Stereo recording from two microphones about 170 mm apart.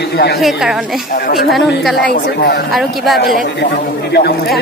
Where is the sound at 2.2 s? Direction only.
75° left (ahead or behind).